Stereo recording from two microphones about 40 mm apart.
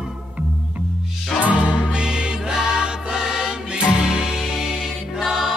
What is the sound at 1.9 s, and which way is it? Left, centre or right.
Music, right.